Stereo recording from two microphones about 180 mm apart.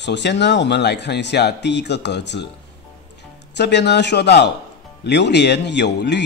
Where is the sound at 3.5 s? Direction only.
70° left (ahead or behind).